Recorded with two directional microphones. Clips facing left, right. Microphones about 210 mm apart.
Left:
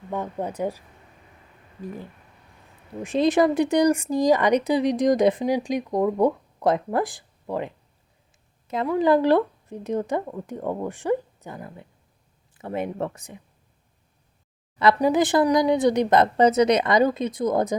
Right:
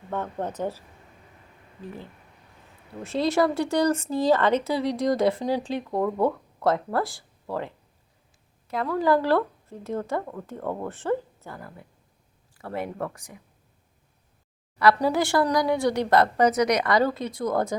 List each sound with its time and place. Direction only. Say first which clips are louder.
0.1 s speech: left 1 dB; 10° left (ahead or behind)
1.8 s a woman's voice: left 4 dB; 10° left (ahead or behind)
14.9 s a woman's voice: left 3 dB; 20° left (ahead or behind)